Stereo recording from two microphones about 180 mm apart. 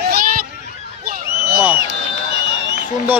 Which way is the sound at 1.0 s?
55° right (ahead or behind).